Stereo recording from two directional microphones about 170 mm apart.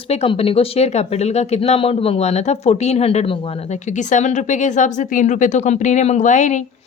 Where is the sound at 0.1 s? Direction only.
35° left (ahead or behind).